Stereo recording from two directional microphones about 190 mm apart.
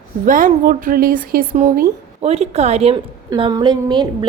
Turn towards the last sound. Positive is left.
turn(degrees=-25)  # may be behind; listen again after turning